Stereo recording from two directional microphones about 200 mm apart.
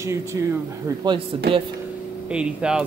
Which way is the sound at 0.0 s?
15° right (ahead or behind).